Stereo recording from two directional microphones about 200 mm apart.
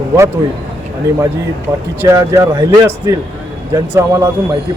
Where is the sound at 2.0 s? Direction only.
15° right (ahead or behind).